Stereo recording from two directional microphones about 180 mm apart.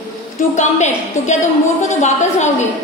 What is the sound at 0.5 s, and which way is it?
Speech, 40° left (ahead or behind).